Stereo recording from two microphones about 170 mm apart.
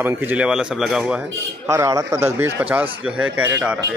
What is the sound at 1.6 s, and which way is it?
Speech, 15° right (ahead or behind).